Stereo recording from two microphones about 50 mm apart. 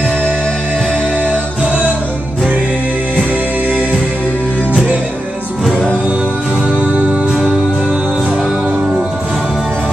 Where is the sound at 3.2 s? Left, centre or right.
Right.